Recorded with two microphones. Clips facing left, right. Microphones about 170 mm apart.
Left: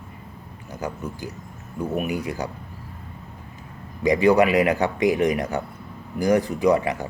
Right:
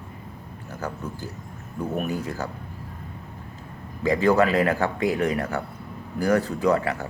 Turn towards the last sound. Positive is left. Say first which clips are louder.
# left 2 dB
turn(degrees=15)  # may be behind; listen again after turning